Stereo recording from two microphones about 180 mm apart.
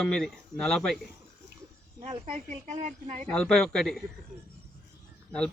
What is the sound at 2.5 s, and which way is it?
Speech, 45° right (ahead or behind).